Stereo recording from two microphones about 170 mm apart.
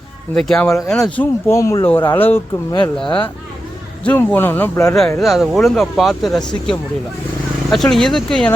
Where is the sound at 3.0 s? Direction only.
30° left (ahead or behind).